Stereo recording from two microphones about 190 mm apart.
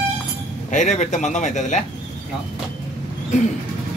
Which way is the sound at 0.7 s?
40° left (ahead or behind).